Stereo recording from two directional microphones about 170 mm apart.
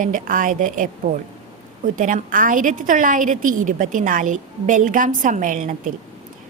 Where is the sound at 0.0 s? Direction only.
50° right (ahead or behind).